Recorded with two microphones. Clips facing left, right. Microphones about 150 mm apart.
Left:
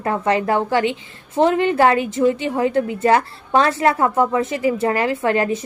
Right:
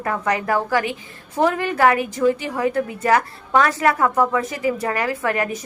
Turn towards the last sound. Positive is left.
turn(degrees=25)  # may be behind; listen again after turning